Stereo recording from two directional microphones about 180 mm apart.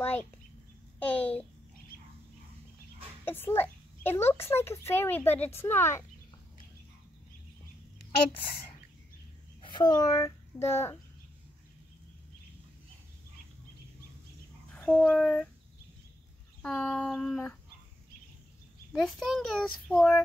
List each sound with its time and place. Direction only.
0.0 s a sound: 10° left (ahead or behind)
0.9 s a child's voice: 10° left (ahead or behind)
3.3 s a child's voice: 10° left (ahead or behind)
9.6 s a child's voice: 25° left (ahead or behind)
14.7 s speech: 5° left (ahead or behind)
16.6 s a child's voice: 5° left (ahead or behind)
18.9 s a child's voice: centre (ahead or behind)